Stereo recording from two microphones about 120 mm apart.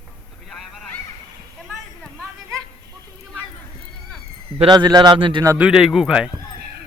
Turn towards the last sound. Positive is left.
turn(degrees=-5)  # may be behind; listen again after turning